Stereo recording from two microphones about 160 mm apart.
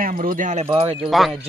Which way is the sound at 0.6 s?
35° right (ahead or behind).